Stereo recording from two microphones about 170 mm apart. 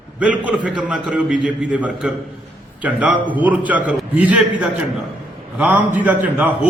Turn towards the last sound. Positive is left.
turn(degrees=-10)  # may be behind; listen again after turning